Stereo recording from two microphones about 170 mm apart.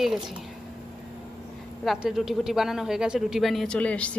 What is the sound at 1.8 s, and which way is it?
Speech, centre (ahead or behind).